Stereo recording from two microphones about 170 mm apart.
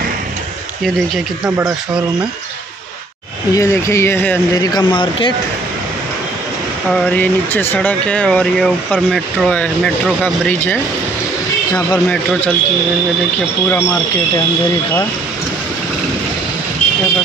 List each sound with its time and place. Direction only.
3.5 s speech: 15° left (ahead or behind)
4.6 s speech: 25° left (ahead or behind)
6.9 s speech: 10° left (ahead or behind)